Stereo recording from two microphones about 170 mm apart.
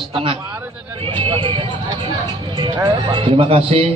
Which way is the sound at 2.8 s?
30° right (ahead or behind).